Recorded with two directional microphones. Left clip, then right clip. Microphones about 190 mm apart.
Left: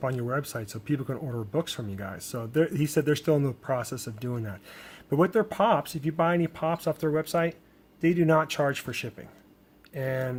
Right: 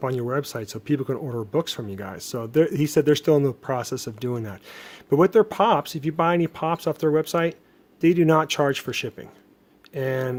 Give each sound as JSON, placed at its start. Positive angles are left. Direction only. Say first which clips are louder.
{"t": 0.0, "sound": "speech", "louder": "right 4 dB", "side_deg": -40}